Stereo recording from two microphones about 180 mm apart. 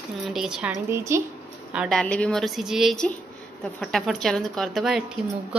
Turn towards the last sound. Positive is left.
turn(degrees=-5)  # may be behind; listen again after turning